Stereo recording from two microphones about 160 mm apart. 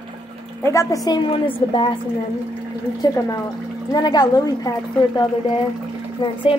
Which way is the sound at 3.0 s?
20° left (ahead or behind).